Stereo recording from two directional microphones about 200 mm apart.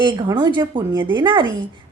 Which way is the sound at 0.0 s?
20° right (ahead or behind).